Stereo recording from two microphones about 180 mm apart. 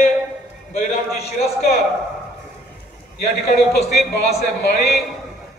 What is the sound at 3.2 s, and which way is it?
A man's voice, 60° left (ahead or behind).